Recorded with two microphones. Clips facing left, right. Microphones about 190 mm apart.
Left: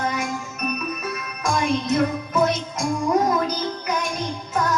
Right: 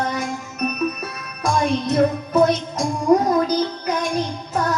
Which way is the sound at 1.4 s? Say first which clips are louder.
Right 2 dB; 35° right (ahead or behind).